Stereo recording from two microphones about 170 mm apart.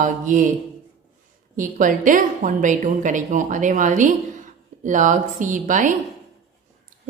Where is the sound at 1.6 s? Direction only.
50° right (ahead or behind).